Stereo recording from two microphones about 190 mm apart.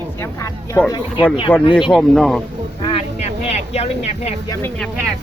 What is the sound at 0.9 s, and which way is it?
Speech, 20° left (ahead or behind).